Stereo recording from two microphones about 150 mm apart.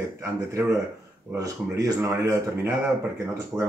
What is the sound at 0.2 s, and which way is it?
Speech, 20° right (ahead or behind).